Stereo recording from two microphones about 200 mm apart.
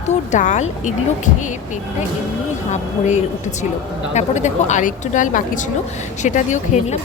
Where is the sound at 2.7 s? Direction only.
35° left (ahead or behind).